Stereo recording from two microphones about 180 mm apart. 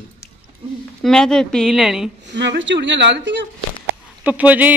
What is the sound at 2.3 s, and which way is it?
A woman's voice, 75° right (ahead or behind).